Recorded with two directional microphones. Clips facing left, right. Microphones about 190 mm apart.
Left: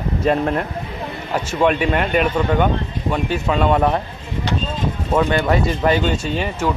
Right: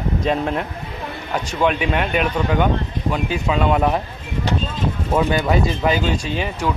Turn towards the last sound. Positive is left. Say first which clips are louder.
# left 2 dB
turn(degrees=0)  # may be behind; listen again after turning